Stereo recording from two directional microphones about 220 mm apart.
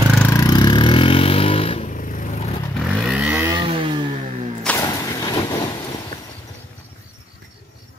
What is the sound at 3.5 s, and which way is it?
Vehicle, 20° right (ahead or behind).